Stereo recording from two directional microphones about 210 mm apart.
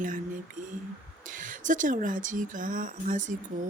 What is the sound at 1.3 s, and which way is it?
Speech, 40° right (ahead or behind).